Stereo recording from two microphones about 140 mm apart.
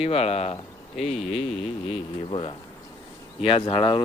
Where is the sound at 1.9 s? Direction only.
40° left (ahead or behind).